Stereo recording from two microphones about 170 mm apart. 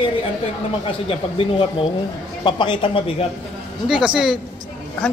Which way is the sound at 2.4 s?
30° left (ahead or behind).